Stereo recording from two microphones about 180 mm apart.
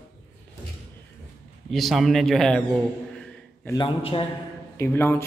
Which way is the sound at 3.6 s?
25° left (ahead or behind).